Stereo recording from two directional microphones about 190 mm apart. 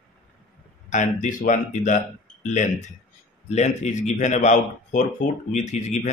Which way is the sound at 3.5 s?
35° left (ahead or behind).